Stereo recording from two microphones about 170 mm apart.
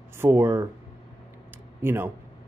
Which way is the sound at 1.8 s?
10° right (ahead or behind).